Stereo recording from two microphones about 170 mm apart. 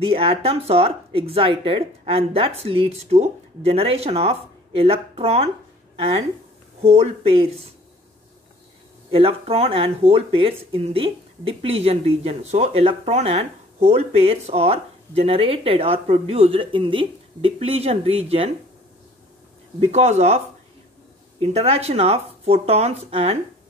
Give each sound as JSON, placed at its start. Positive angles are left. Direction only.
{"t": 0.0, "sound": "speech", "side_deg": -35}
{"t": 9.1, "sound": "speech", "side_deg": -35}
{"t": 19.8, "sound": "speech", "side_deg": -40}
{"t": 21.4, "sound": "speech", "side_deg": -35}